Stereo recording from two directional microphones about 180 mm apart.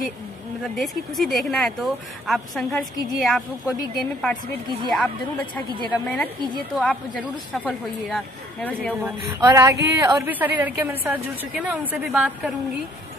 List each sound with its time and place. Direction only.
0.7 s a woman's voice: centre (ahead or behind)
6.7 s a woman's voice: 5° left (ahead or behind)
9.4 s a woman's voice: 20° right (ahead or behind); by 12.5 s centre (ahead or behind)